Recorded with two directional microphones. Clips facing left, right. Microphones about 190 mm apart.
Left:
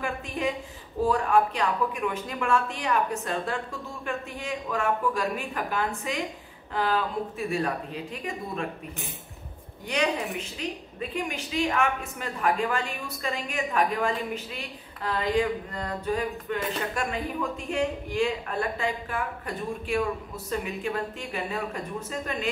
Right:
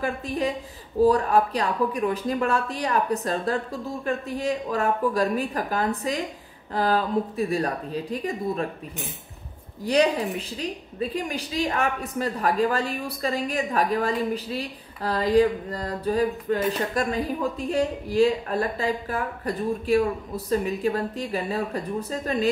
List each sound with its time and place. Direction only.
1.0 s a woman's voice: 35° right (ahead or behind)
9.8 s a woman's voice: 35° right (ahead or behind)